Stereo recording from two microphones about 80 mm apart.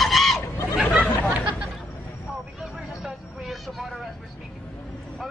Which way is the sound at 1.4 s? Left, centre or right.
Centre.